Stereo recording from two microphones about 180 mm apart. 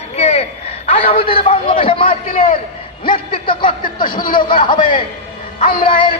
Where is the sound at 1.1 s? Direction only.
30° left (ahead or behind).